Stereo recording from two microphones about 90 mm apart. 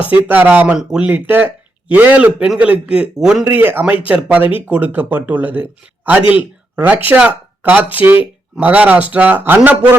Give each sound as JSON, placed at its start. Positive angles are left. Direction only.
{"t": 0.1, "sound": "a man's voice", "side_deg": -20}
{"t": 1.1, "sound": "a man's voice", "side_deg": -25}
{"t": 3.4, "sound": "a man's voice", "side_deg": -20}